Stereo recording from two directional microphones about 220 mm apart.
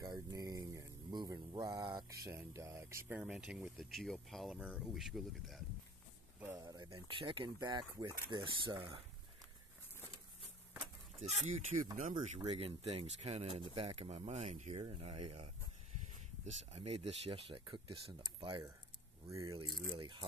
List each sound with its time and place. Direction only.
0.0 s speech: 15° right (ahead or behind); by 5.6 s centre (ahead or behind)
6.4 s speech: 15° right (ahead or behind)
11.1 s speech: 30° right (ahead or behind)